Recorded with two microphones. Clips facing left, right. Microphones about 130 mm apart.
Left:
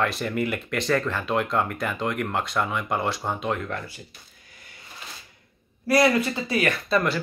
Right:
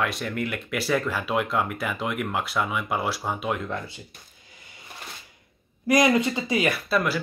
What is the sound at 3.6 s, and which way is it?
Speech, 20° right (ahead or behind).